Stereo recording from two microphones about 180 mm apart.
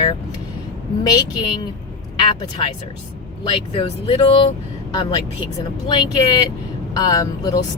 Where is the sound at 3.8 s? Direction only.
30° left (ahead or behind).